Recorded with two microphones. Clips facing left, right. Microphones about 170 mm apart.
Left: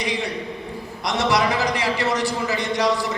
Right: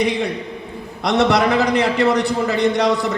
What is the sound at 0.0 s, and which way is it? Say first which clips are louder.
A man's voice: right 6 dB; 55° right (ahead or behind).